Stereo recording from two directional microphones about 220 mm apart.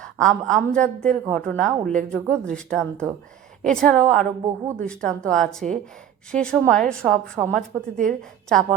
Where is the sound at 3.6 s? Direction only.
5° left (ahead or behind).